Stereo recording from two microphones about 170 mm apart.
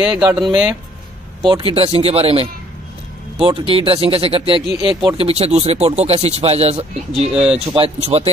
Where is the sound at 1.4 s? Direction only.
30° right (ahead or behind).